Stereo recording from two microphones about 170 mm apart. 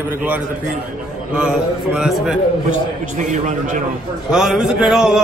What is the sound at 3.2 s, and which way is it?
Speech, 45° right (ahead or behind).